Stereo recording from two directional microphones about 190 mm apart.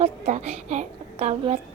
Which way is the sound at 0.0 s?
35° right (ahead or behind).